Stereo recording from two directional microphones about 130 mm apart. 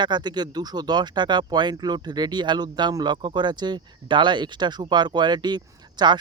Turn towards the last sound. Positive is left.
turn(degrees=-35)  # may be behind; listen again after turning